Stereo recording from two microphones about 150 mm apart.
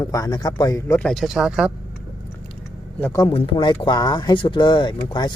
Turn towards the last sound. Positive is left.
turn(degrees=30)  # may be behind; listen again after turning